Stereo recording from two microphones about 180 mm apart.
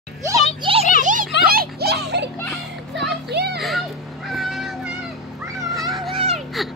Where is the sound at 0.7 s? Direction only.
30° right (ahead or behind).